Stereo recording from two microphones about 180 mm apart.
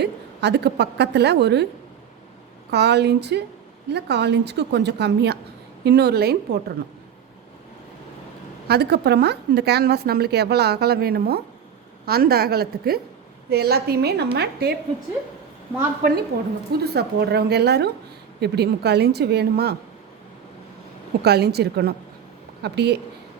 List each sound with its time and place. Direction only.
0.0 s a woman's voice: 65° right (ahead or behind)
2.6 s a woman's voice: 70° right (ahead or behind)
8.6 s a woman's voice: 65° right (ahead or behind)
16.3 s a woman's voice: 65° right (ahead or behind)
21.2 s a woman's voice: 65° right (ahead or behind)